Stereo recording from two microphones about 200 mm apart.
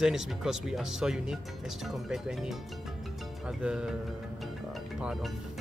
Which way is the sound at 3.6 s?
5° right (ahead or behind).